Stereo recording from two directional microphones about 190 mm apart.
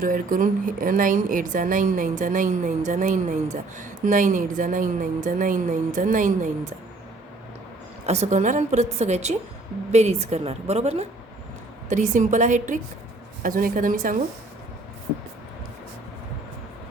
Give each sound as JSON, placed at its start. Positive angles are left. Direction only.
{"t": 0.0, "sound": "a woman's voice", "side_deg": -45}
{"t": 8.0, "sound": "a woman's voice", "side_deg": -35}